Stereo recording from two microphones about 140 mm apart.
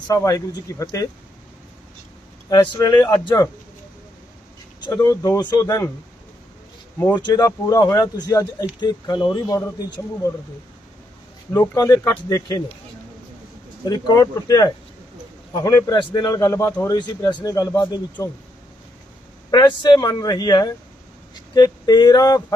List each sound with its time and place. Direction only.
0.1 s speech: 25° left (ahead or behind)
2.5 s speech: 30° left (ahead or behind)
4.8 s speech: 25° left (ahead or behind)
7.2 s speech: 30° left (ahead or behind)
11.5 s speech: 25° left (ahead or behind)
13.8 s speech: 30° left (ahead or behind)
19.5 s speech: 30° left (ahead or behind)